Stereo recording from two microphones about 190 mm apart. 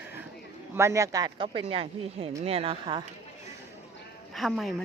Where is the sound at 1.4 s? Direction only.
30° right (ahead or behind).